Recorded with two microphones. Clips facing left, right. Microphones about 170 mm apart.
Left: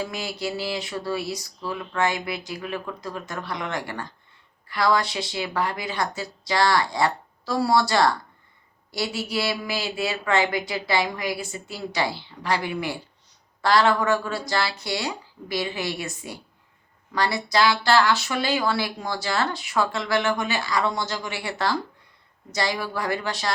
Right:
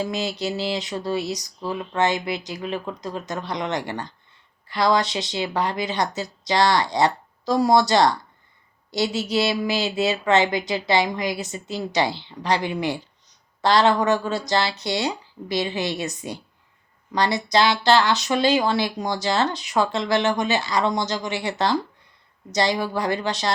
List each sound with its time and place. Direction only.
0.0 s speech: 20° right (ahead or behind)